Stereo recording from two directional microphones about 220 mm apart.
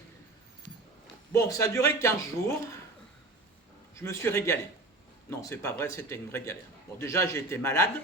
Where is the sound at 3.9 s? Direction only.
15° left (ahead or behind).